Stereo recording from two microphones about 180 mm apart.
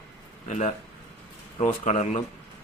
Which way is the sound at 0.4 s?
40° left (ahead or behind).